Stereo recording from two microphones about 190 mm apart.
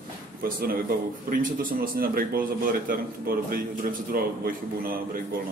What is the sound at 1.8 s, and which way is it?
Speech, 50° right (ahead or behind).